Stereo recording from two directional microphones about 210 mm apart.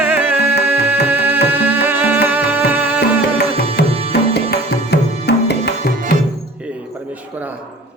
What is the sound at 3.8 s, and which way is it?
Tabla, 50° left (ahead or behind).